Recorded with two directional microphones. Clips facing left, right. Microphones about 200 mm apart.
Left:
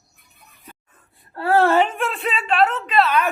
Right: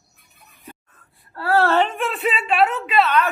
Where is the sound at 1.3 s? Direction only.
20° left (ahead or behind); by 3.2 s centre (ahead or behind).